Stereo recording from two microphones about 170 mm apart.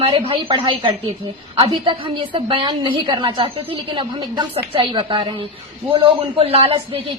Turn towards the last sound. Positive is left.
turn(degrees=-30)  # may be behind; listen again after turning